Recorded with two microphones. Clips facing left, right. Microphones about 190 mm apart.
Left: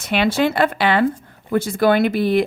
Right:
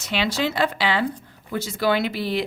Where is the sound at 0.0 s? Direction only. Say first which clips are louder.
Left 6 dB; 55° left (ahead or behind).